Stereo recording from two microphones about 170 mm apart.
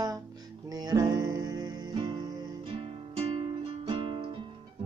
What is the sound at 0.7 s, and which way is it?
Music, 25° right (ahead or behind).